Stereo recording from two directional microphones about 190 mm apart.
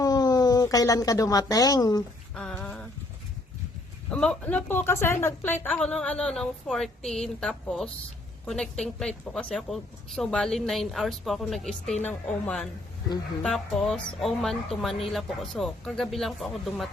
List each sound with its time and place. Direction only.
0.0 s speech: 20° left (ahead or behind)
2.3 s a sound: 5° left (ahead or behind)
4.1 s a woman's voice: 5° left (ahead or behind)